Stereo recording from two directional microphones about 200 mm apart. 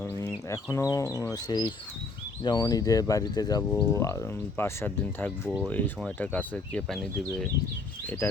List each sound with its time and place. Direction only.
0.0 s speech: 10° left (ahead or behind)